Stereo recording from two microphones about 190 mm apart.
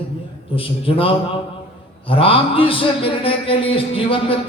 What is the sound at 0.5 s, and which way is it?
A man's voice, 30° left (ahead or behind).